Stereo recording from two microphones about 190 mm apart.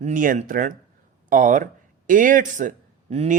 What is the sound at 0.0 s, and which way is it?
A man's voice, 45° right (ahead or behind).